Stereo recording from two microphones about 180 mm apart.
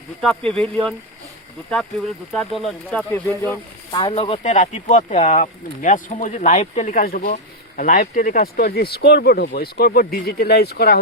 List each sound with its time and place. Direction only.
0.2 s speech: 5° left (ahead or behind)
2.3 s speech: centre (ahead or behind)
3.9 s speech: 30° left (ahead or behind); by 11.0 s 60° left (ahead or behind)